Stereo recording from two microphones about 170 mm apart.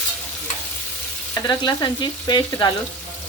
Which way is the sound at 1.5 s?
25° left (ahead or behind).